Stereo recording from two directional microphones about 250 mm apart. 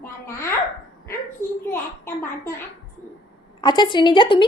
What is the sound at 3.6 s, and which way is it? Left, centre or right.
Speech, centre.